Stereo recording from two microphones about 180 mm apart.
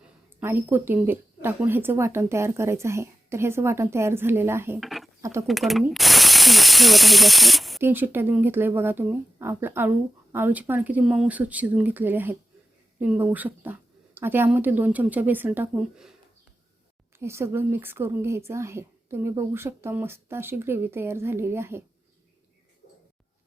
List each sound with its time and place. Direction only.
0.0 s a woman's voice: 10° right (ahead or behind)
4.8 s a sound: centre (ahead or behind)
5.2 s speech: 15° right (ahead or behind)
5.5 s speech: centre (ahead or behind)
7.8 s a woman's voice: 10° right (ahead or behind)
17.2 s a woman's voice: 15° right (ahead or behind)